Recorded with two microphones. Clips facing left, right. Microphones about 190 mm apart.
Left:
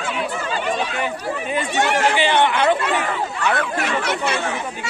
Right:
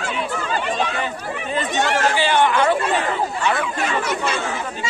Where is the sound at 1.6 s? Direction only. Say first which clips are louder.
Even; 15° left (ahead or behind).